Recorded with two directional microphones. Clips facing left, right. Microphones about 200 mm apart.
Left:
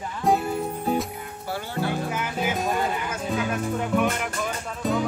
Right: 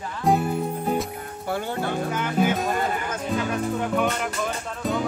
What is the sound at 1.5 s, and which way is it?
Music, 50° right (ahead or behind).